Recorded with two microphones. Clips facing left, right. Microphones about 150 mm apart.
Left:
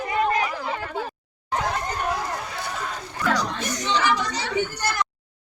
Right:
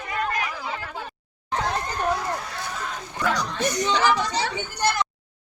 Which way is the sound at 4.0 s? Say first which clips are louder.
Right 2 dB; 30° right (ahead or behind).